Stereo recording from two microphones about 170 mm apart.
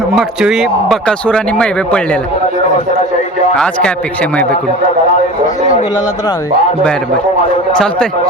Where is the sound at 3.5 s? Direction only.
5° left (ahead or behind).